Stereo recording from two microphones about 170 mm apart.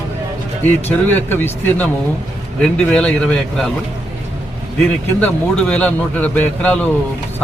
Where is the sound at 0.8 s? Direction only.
10° left (ahead or behind).